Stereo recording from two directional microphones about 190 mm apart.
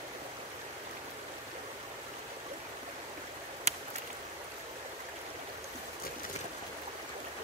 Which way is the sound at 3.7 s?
35° right (ahead or behind).